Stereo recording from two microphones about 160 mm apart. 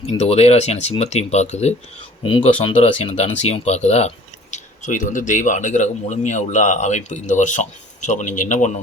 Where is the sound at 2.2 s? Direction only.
30° left (ahead or behind).